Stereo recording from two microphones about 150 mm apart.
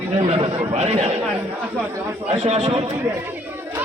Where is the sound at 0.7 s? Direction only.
45° right (ahead or behind).